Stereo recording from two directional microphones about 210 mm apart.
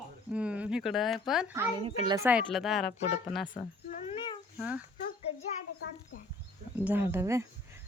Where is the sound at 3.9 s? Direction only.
25° left (ahead or behind).